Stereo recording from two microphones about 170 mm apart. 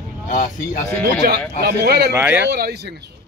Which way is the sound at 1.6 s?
70° right (ahead or behind).